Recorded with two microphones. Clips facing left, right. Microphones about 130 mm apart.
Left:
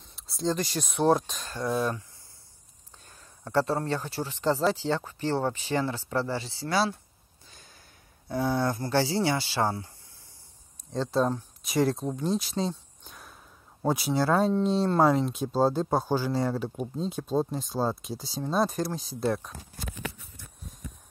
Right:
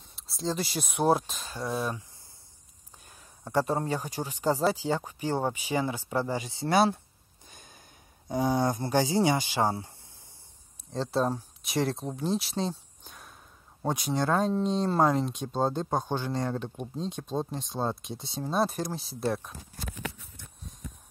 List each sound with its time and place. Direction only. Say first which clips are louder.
0.1 s speech: left 3 dB; centre (ahead or behind)
3.1 s speech: left 1 dB; 15° right (ahead or behind)
7.4 s snort: right 2 dB; 20° right (ahead or behind)
8.3 s speech: right 1 dB; 20° right (ahead or behind)
10.9 s speech: left 2 dB; centre (ahead or behind)